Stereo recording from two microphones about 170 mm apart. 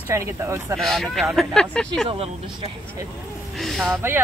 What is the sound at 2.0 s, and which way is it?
Speech, 35° right (ahead or behind).